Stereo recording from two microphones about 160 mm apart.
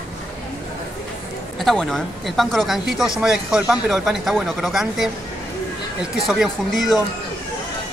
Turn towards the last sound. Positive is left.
turn(degrees=0)  # may be behind; listen again after turning